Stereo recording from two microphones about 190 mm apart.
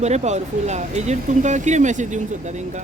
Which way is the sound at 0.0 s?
35° right (ahead or behind).